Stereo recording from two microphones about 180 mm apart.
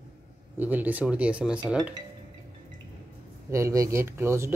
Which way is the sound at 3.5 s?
15° right (ahead or behind).